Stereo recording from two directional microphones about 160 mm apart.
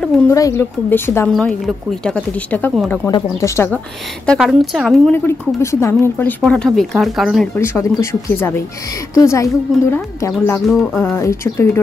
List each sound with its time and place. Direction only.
0.3 s a woman's voice: 20° left (ahead or behind)
1.3 s a woman's voice: centre (ahead or behind)
4.4 s speech: centre (ahead or behind)
5.1 s a woman's voice: 15° left (ahead or behind)
6.4 s speech: 5° left (ahead or behind)
7.5 s a woman's voice: 15° left (ahead or behind)
10.7 s speech: centre (ahead or behind)
11.0 s a woman's voice: 15° left (ahead or behind)